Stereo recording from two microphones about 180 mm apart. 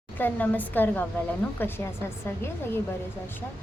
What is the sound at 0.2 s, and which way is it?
Speech, 10° left (ahead or behind).